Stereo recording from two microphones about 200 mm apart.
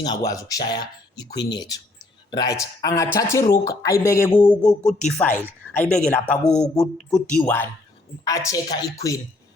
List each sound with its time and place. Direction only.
0.0 s a man's voice: 20° left (ahead or behind)